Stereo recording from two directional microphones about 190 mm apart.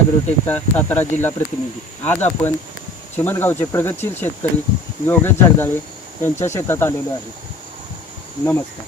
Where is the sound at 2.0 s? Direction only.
10° left (ahead or behind).